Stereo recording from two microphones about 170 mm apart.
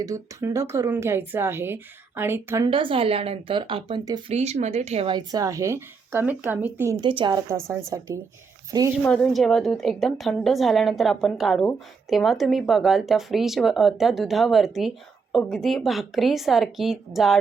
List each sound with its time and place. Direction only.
0.0 s speech: 20° right (ahead or behind)
2.6 s speech: 30° right (ahead or behind)
4.3 s speech: 40° right (ahead or behind)
5.0 s speech: 25° right (ahead or behind)
7.0 s a woman's voice: 30° right (ahead or behind)
9.0 s speech: 5° left (ahead or behind)